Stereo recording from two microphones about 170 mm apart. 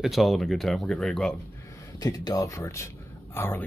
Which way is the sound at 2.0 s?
25° left (ahead or behind).